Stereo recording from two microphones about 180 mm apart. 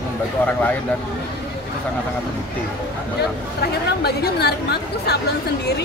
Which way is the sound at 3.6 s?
60° left (ahead or behind).